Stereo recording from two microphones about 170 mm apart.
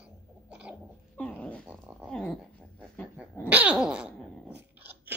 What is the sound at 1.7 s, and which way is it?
Dog, 5° right (ahead or behind).